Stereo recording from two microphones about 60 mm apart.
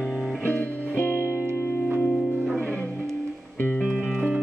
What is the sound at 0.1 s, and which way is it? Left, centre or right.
Music, centre.